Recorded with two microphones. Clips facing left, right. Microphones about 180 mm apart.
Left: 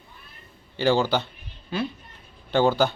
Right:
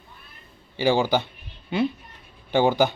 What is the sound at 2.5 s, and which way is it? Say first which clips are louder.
Speech: right 1 dB; 15° right (ahead or behind).